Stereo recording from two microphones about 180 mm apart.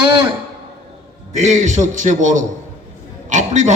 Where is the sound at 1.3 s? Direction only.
40° right (ahead or behind).